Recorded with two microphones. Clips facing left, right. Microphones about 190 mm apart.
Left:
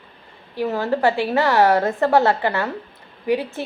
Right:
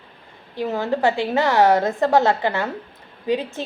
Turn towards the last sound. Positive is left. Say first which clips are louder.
# left 1 dB
turn(degrees=-20)  # may be behind; listen again after turning